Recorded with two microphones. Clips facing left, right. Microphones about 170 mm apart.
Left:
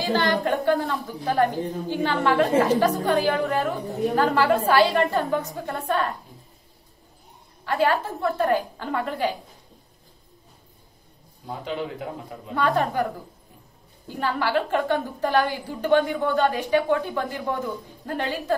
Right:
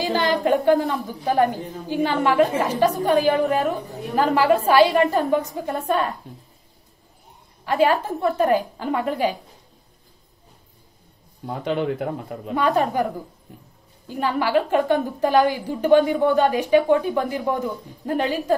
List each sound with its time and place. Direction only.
0.0 s a woman's voice: 15° right (ahead or behind)
7.6 s a woman's voice: 15° right (ahead or behind)
11.6 s speech: 60° right (ahead or behind)
12.5 s a woman's voice: 15° right (ahead or behind)
14.0 s a woman's voice: 15° right (ahead or behind)